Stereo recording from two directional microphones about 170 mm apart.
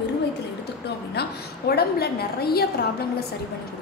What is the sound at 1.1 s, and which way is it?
A woman's voice, 70° left (ahead or behind).